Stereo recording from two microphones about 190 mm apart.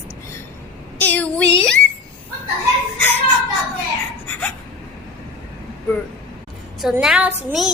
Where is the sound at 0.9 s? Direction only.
10° left (ahead or behind).